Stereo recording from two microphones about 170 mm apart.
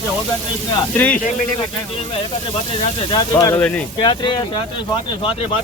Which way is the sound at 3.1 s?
20° left (ahead or behind).